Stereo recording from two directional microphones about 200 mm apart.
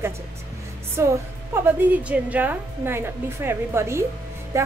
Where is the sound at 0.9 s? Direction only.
10° right (ahead or behind).